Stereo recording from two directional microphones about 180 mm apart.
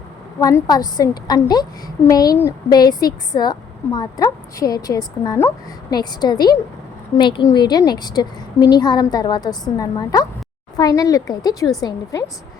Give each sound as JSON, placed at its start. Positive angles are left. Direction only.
{"t": 0.3, "sound": "speech", "side_deg": 20}